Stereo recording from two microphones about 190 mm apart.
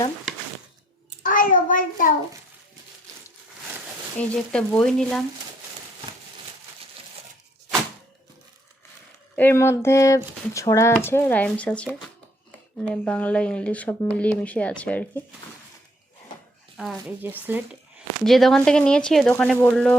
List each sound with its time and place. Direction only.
1.2 s child singing: 45° left (ahead or behind)
4.2 s speech: 5° left (ahead or behind)
9.3 s speech: 10° left (ahead or behind)
16.7 s speech: centre (ahead or behind)
18.3 s speech: centre (ahead or behind)